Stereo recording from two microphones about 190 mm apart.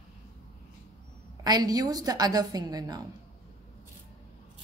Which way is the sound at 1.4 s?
20° right (ahead or behind).